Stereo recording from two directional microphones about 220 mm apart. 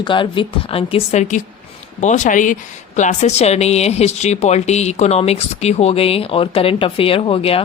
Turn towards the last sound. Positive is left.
turn(degrees=25)  # may be behind; listen again after turning